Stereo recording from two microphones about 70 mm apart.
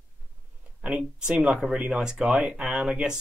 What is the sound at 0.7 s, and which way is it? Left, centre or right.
Speech, centre.